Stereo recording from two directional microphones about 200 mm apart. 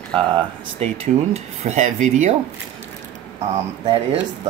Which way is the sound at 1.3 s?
35° right (ahead or behind).